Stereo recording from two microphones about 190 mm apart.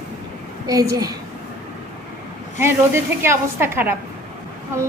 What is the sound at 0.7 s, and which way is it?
Speech, 20° right (ahead or behind).